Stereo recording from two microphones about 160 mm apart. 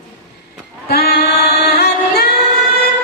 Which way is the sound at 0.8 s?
85° left.